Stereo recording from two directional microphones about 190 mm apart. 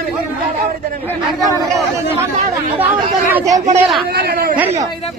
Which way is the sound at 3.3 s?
15° right (ahead or behind).